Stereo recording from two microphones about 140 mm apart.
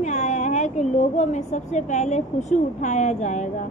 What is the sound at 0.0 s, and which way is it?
A woman's voice, 55° left (ahead or behind).